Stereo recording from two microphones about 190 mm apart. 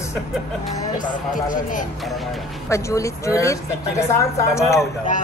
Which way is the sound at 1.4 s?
45° left (ahead or behind).